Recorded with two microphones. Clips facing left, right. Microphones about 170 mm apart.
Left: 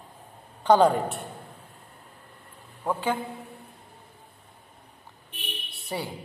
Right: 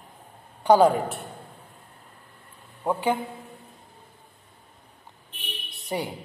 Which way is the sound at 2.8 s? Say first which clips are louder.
Right 3 dB; 15° right (ahead or behind).